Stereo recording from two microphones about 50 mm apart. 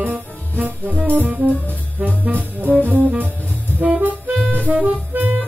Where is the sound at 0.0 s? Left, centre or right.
Right.